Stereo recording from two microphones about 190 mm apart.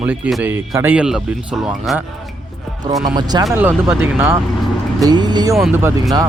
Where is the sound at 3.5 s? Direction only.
10° right (ahead or behind).